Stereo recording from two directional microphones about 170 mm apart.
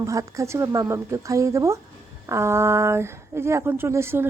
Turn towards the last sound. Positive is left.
turn(degrees=-15)  # may be behind; listen again after turning